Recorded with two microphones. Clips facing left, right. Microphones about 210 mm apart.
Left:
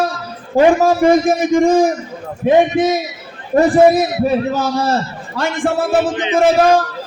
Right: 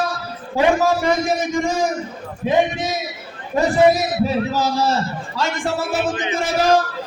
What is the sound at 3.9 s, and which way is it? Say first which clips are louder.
A man's voice: left 4 dB; 55° left (ahead or behind).